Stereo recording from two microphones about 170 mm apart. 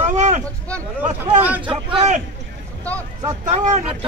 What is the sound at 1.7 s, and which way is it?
Speech, 30° right (ahead or behind).